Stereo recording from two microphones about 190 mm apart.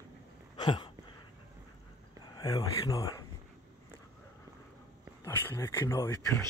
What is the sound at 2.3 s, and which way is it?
Speech, 20° left (ahead or behind).